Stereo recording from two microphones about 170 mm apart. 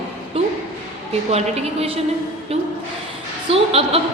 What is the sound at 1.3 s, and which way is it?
Speech, 40° right (ahead or behind).